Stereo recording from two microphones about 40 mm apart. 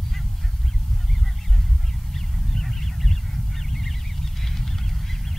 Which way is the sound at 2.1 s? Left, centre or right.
Centre.